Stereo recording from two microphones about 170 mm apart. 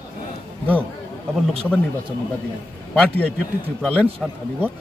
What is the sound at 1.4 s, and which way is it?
Speech, 5° left (ahead or behind).